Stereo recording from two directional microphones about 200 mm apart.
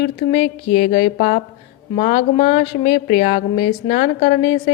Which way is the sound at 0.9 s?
40° left (ahead or behind).